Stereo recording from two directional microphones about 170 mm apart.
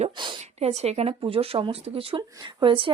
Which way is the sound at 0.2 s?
30° right (ahead or behind).